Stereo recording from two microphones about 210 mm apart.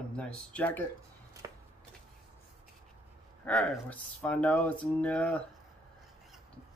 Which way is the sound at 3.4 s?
Centre (ahead or behind).